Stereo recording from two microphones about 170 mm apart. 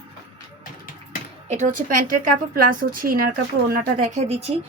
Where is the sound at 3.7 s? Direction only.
45° right (ahead or behind).